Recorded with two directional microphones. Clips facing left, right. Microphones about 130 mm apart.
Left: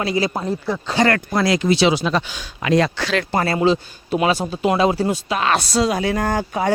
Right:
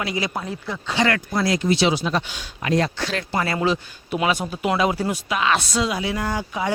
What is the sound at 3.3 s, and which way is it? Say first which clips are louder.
A man's voice: left 4 dB; 35° left (ahead or behind).